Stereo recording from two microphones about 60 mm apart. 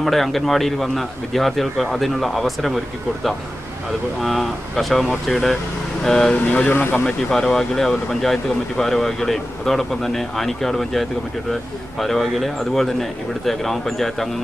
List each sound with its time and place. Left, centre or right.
0.0 s speech: centre
4.2 s speech: centre
6.4 s speech: left
7.1 s speech: centre